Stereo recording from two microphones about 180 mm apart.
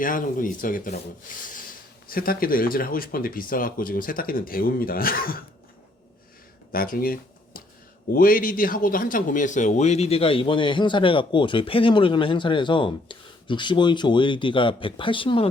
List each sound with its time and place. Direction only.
0.0 s speech: 50° left (ahead or behind)
6.7 s speech: 55° left (ahead or behind); by 15.4 s 30° left (ahead or behind)